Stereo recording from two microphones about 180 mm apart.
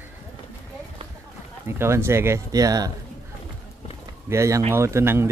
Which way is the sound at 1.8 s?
15° right (ahead or behind).